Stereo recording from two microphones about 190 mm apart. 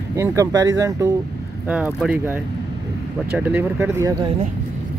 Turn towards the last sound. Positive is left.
turn(degrees=-10)  # may be behind; listen again after turning